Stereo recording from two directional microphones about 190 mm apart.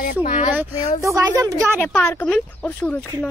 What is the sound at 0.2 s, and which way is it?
Speech, 40° left (ahead or behind).